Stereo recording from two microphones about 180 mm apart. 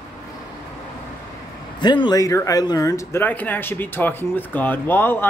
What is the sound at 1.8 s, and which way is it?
Speech, 25° left (ahead or behind).